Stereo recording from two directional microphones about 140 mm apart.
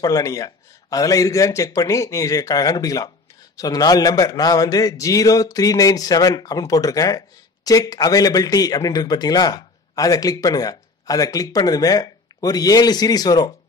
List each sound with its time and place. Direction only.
0.0 s a man's voice: 25° left (ahead or behind)